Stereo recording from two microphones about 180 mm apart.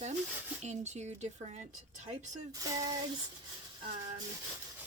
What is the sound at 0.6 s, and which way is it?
Speech, 40° right (ahead or behind).